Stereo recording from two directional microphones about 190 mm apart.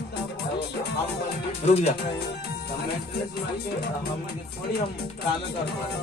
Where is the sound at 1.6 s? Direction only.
35° left (ahead or behind).